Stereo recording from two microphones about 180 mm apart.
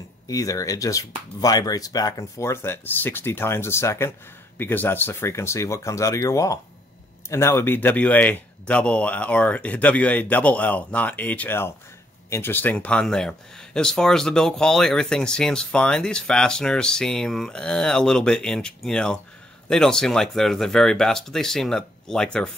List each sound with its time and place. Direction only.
0.3 s speech: 20° left (ahead or behind); by 22.5 s 5° left (ahead or behind)